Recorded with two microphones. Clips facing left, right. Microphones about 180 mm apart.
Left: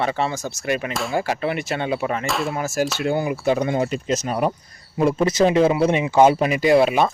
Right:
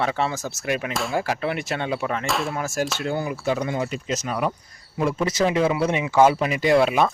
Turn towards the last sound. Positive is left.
turn(degrees=5)  # may be behind; listen again after turning